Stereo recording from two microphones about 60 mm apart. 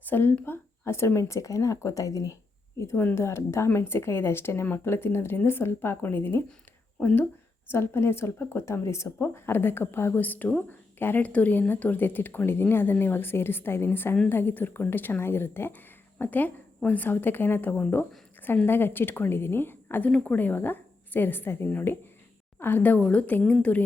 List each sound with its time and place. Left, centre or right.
0.1 s speech: left
2.9 s speech: left
3.2 s a woman's voice: left
7.0 s a woman's voice: left
7.7 s a woman's voice: left
9.1 s speech: left
10.2 s a woman's voice: left